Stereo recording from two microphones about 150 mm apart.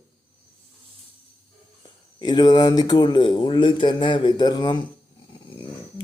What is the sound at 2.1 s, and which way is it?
A man's voice, 30° left (ahead or behind).